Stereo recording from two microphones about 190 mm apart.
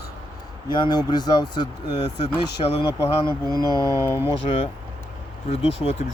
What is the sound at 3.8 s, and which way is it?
Speech, 15° right (ahead or behind).